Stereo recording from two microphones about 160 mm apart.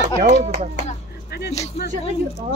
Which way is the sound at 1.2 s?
90° left.